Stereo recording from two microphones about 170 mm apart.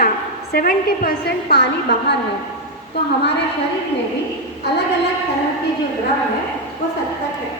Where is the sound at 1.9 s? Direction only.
85° left.